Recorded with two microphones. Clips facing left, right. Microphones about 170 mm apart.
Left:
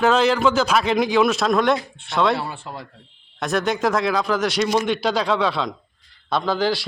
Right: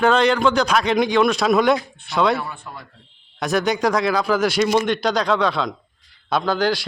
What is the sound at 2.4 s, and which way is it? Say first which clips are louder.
Speech: left 1 dB; 30° left (ahead or behind).